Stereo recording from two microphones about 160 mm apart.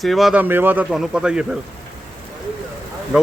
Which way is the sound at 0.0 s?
Centre (ahead or behind).